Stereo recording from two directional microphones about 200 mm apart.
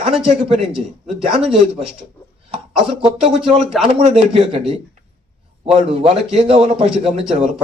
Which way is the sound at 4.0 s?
30° right (ahead or behind).